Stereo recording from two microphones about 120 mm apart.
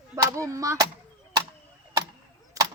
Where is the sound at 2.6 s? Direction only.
25° right (ahead or behind).